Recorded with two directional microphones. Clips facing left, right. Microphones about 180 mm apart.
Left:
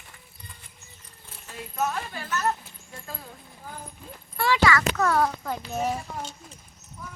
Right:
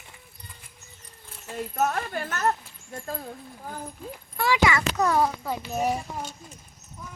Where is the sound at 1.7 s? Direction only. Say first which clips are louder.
Right 2 dB; 50° right (ahead or behind).